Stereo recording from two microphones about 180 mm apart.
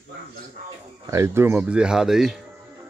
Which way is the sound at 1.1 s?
15° right (ahead or behind).